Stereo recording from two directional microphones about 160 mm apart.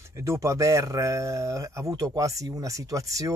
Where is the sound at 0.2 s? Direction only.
20° right (ahead or behind).